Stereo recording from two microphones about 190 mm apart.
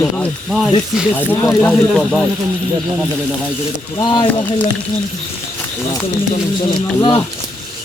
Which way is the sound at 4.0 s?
20° left (ahead or behind).